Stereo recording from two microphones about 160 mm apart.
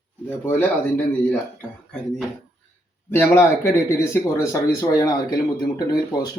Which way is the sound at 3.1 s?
15° left (ahead or behind).